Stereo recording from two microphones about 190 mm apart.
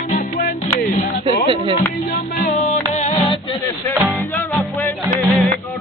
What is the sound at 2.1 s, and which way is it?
Music, 40° left (ahead or behind).